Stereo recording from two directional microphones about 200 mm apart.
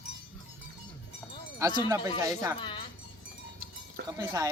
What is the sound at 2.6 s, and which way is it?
Music, 25° left (ahead or behind).